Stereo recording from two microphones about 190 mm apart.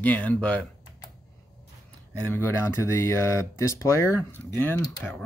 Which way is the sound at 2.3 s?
10° left (ahead or behind).